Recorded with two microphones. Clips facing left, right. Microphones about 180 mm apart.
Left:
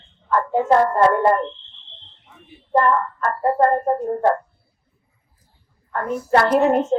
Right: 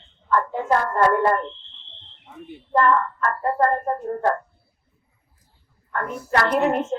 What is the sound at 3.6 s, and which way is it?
Child singing, 30° left (ahead or behind).